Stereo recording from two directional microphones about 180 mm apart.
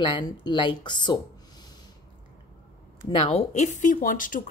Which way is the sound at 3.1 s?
35° left (ahead or behind).